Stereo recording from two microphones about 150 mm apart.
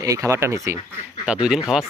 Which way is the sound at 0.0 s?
25° right (ahead or behind).